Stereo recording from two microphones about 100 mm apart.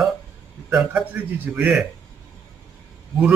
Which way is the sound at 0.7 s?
15° right (ahead or behind).